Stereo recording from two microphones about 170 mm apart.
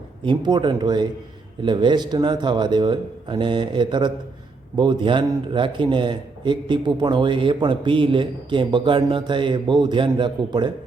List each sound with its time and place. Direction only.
0.3 s a man's voice: 25° right (ahead or behind)